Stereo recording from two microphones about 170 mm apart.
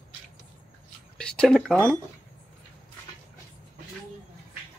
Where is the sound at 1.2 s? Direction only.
5° left (ahead or behind).